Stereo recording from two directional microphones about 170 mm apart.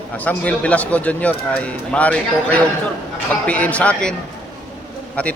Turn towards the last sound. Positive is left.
turn(degrees=5)  # may be behind; listen again after turning